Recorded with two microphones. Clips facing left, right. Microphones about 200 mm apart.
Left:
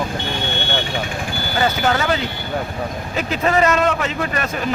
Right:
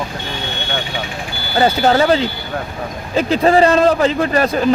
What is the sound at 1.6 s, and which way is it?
A man's voice, 35° right (ahead or behind).